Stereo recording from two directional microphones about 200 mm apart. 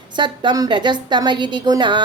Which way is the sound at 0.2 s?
20° right (ahead or behind).